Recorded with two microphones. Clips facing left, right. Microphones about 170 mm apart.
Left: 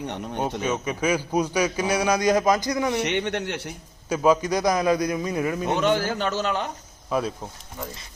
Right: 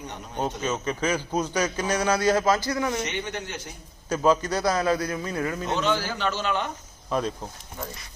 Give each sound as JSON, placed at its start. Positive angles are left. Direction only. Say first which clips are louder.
{"t": 0.6, "sound": "a man's voice", "louder": "left 2 dB", "side_deg": 10}
{"t": 3.0, "sound": "speech", "louder": "left 6 dB", "side_deg": 65}
{"t": 4.1, "sound": "a man's voice", "louder": "left 2 dB", "side_deg": 10}
{"t": 5.9, "sound": "a man's voice", "louder": "left 3 dB", "side_deg": 50}
{"t": 7.1, "sound": "a man's voice", "louder": "left 1 dB", "side_deg": 5}